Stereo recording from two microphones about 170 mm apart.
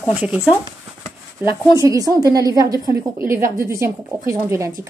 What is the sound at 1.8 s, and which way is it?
Speech, 20° right (ahead or behind).